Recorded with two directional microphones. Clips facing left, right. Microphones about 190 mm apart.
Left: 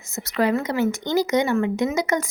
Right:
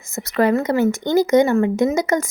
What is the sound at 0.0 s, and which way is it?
Speech, 50° right (ahead or behind).